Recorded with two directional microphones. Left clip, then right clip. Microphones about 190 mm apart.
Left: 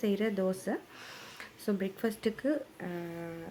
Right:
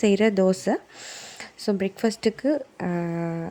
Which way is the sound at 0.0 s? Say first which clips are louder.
Right 11 dB; 35° right (ahead or behind).